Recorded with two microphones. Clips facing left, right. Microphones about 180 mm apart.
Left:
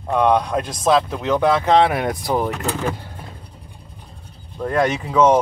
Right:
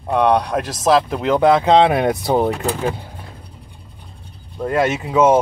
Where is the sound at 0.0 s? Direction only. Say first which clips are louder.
Right 1 dB; centre (ahead or behind).